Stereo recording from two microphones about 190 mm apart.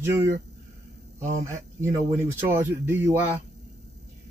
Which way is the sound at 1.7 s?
15° right (ahead or behind).